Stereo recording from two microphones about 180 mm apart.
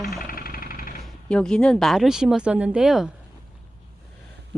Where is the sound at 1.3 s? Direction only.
5° left (ahead or behind).